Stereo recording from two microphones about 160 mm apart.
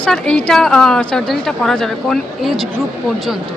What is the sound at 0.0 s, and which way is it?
A woman's voice, 5° left (ahead or behind).